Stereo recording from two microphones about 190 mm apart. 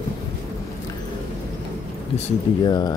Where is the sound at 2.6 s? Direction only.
20° left (ahead or behind).